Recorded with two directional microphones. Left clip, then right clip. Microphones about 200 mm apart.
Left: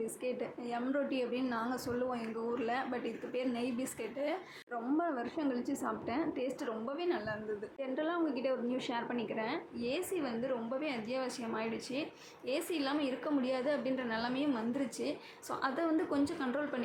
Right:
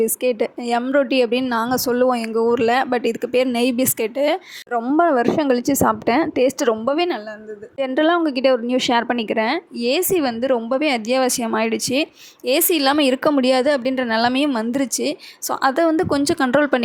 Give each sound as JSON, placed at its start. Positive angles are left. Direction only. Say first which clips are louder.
{"t": 0.0, "sound": "a woman's voice", "louder": "right 19 dB", "side_deg": -55}